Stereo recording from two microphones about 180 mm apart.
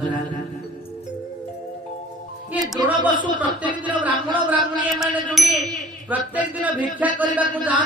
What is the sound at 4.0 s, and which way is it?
Ding, 10° right (ahead or behind).